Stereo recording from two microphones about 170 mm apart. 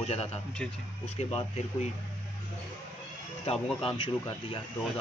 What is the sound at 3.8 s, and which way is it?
Speech, 30° left (ahead or behind).